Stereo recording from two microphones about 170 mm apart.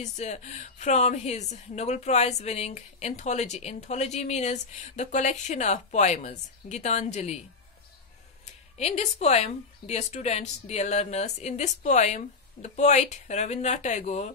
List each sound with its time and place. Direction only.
0.0 s a woman's voice: 40° left (ahead or behind)
8.7 s a woman's voice: 40° left (ahead or behind)